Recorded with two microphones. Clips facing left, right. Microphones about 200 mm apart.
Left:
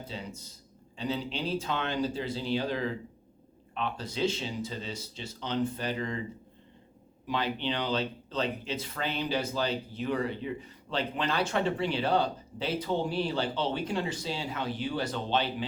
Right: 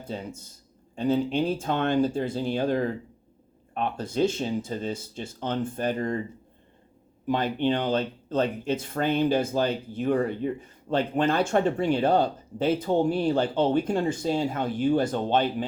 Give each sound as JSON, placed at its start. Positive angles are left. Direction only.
{"t": 0.0, "sound": "speech", "side_deg": -50}
{"t": 7.3, "sound": "speech", "side_deg": -50}